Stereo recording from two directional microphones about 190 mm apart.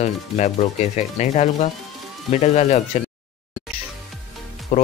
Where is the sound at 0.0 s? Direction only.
40° left (ahead or behind).